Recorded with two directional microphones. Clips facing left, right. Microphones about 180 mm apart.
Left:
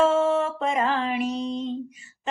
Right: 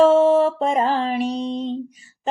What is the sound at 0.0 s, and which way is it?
Mantra, 30° right (ahead or behind).